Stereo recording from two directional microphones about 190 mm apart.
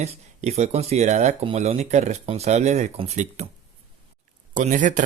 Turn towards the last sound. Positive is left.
turn(degrees=-40)  # may be behind; listen again after turning